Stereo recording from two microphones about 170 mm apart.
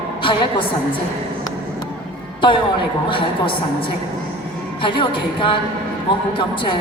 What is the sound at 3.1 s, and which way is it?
Speech, 30° left (ahead or behind).